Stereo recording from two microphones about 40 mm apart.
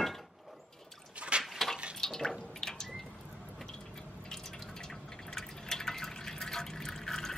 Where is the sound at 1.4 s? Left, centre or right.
Centre.